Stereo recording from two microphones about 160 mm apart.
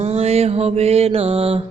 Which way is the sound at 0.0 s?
40° right (ahead or behind).